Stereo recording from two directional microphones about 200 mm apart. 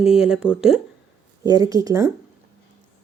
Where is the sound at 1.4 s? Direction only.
15° right (ahead or behind).